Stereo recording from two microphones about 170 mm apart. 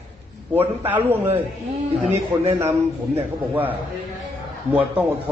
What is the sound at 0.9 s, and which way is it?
Speech, 10° right (ahead or behind).